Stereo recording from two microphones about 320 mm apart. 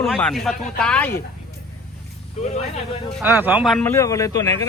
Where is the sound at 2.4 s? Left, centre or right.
Centre.